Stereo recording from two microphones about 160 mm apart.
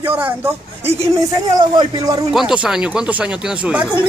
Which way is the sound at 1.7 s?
25° right (ahead or behind).